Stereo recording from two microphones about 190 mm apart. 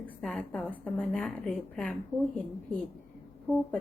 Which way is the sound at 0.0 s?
5° left (ahead or behind).